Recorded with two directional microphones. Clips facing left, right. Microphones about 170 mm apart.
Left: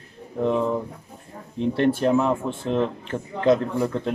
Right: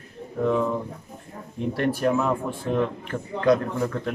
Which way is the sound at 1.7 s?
25° left (ahead or behind).